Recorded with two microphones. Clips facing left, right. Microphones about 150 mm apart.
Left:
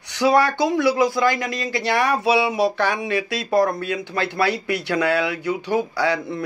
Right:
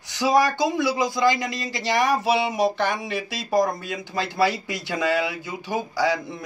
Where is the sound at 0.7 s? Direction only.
15° right (ahead or behind).